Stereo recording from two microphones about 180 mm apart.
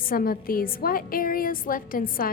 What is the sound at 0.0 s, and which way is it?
A woman's voice, 55° left (ahead or behind).